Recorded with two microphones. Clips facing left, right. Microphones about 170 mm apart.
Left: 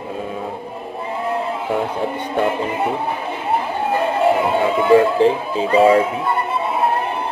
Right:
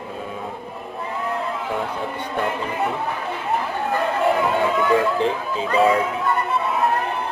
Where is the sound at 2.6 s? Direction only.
30° left (ahead or behind).